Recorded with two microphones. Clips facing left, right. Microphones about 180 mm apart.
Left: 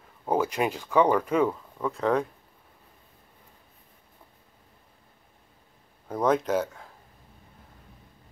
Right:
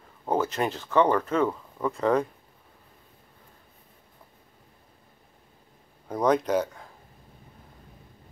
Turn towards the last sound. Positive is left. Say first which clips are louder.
# right 1 dB
turn(degrees=5)  # may be behind; listen again after turning